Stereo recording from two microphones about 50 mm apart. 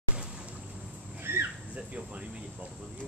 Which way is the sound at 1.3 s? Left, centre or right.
Right.